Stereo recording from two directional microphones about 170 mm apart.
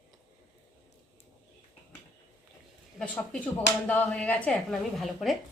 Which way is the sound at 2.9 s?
5° left (ahead or behind).